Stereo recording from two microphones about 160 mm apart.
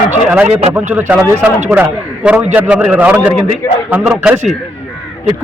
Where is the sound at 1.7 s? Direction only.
10° right (ahead or behind).